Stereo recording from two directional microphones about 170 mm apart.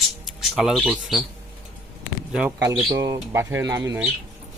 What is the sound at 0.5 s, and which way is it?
Speech, 5° right (ahead or behind).